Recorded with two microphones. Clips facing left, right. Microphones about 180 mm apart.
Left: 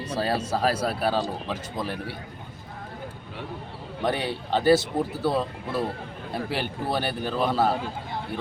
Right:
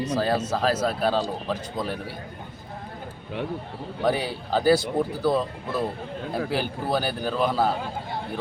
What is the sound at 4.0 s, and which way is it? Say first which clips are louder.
Speech: right 2 dB; centre (ahead or behind).